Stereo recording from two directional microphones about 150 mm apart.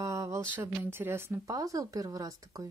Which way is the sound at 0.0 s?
20° right (ahead or behind).